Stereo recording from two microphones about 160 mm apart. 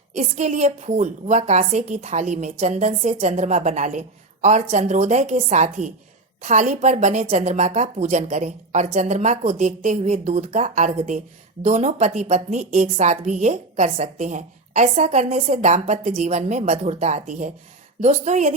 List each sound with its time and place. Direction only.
0.1 s a woman's voice: 45° right (ahead or behind)